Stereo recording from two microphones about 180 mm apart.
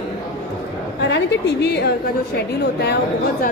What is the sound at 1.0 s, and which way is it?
A woman's voice, 75° left (ahead or behind).